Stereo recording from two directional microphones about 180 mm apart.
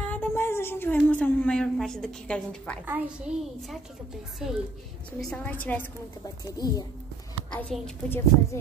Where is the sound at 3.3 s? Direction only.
5° right (ahead or behind).